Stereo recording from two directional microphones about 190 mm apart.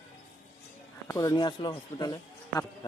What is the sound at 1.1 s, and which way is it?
Speech, 15° left (ahead or behind).